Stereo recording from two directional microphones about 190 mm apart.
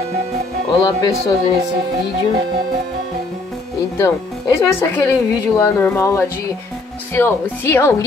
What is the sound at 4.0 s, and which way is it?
Speech, 15° left (ahead or behind).